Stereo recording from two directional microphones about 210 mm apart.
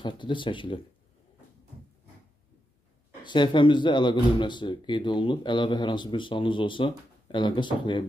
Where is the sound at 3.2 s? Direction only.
20° left (ahead or behind).